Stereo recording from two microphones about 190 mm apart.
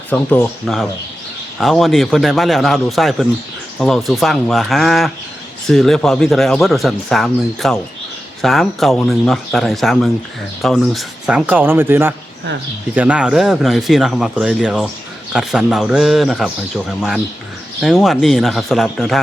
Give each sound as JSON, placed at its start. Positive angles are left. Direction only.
{"t": 0.1, "sound": "speech", "side_deg": 10}
{"t": 17.7, "sound": "speech", "side_deg": 0}